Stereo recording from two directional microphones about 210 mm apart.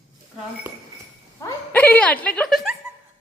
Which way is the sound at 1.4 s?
10° left (ahead or behind).